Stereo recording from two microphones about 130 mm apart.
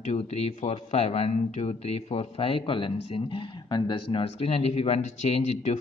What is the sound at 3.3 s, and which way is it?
Speech, 35° left (ahead or behind).